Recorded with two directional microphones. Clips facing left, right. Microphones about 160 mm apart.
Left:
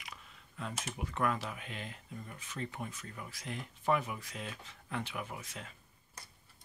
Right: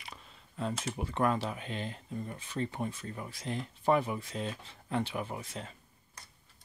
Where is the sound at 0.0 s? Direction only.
30° right (ahead or behind).